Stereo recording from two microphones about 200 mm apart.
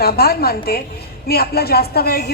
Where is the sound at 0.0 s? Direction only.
50° left (ahead or behind).